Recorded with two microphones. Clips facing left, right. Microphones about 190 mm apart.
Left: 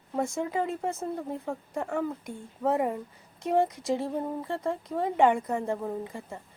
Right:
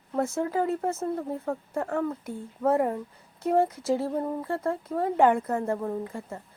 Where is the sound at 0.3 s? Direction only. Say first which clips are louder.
Right 3 dB; centre (ahead or behind).